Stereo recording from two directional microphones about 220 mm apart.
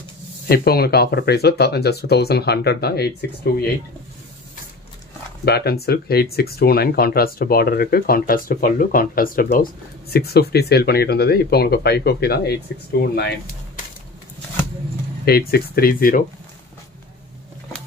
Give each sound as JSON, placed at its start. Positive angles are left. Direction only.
{"t": 0.5, "sound": "speech", "side_deg": 45}
{"t": 5.4, "sound": "speech", "side_deg": 45}
{"t": 15.2, "sound": "speech", "side_deg": 45}